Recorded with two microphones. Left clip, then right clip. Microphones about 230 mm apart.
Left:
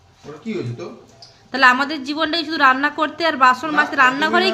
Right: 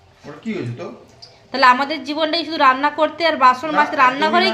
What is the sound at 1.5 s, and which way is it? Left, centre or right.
A woman's voice, centre.